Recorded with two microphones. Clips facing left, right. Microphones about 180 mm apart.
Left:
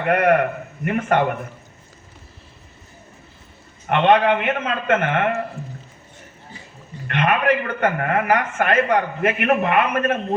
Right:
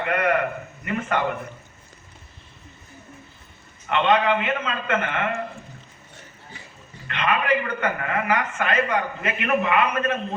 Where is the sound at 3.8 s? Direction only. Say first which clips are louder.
Left 4 dB; 55° left (ahead or behind).